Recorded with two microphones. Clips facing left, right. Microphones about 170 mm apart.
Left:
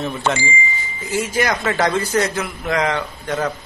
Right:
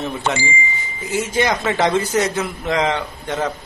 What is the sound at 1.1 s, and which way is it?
A man's voice, 25° right (ahead or behind).